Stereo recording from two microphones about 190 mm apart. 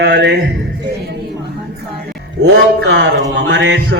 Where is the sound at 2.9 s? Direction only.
70° right (ahead or behind).